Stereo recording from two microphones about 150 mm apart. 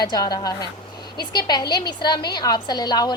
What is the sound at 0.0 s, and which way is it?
A woman's voice, 25° left (ahead or behind).